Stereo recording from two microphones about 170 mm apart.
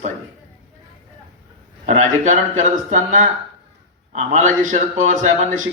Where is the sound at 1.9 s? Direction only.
45° right (ahead or behind).